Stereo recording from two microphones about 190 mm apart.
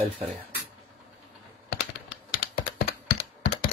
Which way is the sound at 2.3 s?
50° left (ahead or behind).